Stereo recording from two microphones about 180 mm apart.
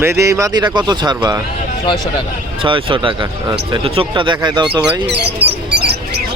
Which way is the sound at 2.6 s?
30° right (ahead or behind).